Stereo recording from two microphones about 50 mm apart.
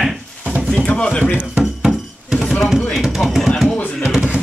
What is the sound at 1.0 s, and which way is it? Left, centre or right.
Speech, centre.